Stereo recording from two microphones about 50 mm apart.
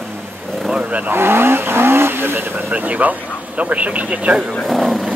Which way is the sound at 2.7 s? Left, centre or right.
Right.